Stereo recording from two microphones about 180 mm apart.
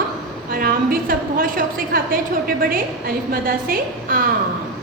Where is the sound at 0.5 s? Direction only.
55° right (ahead or behind).